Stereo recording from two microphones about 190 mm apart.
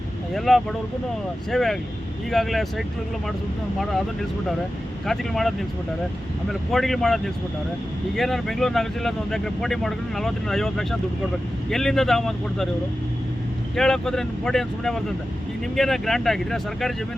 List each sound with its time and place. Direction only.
0.3 s speech: centre (ahead or behind)
5.0 s speech: centre (ahead or behind)
13.7 s speech: centre (ahead or behind)